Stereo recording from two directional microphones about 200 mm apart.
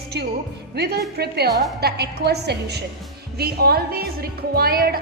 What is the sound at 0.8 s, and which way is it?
A woman's voice, 50° right (ahead or behind).